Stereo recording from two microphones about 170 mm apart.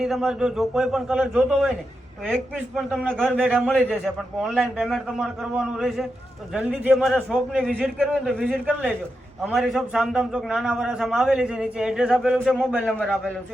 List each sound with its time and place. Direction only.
0.0 s a man's voice: centre (ahead or behind)
7.3 s a man's voice: 10° right (ahead or behind)
12.8 s a man's voice: 5° left (ahead or behind)